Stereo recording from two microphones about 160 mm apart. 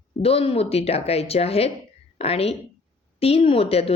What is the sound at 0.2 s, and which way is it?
A woman's voice, 40° left (ahead or behind).